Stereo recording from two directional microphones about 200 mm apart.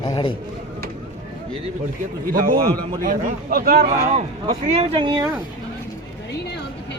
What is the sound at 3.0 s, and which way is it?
Speech, 45° right (ahead or behind).